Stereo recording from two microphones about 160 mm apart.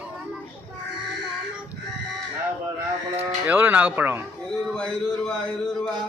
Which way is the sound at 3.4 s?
10° right (ahead or behind).